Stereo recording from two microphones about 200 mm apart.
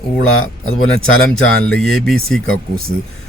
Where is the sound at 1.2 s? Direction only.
5° left (ahead or behind).